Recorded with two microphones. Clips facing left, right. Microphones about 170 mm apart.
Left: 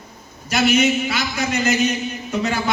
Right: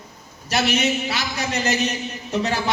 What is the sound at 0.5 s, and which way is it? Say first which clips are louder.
A man's voice: left 4 dB; 35° right (ahead or behind).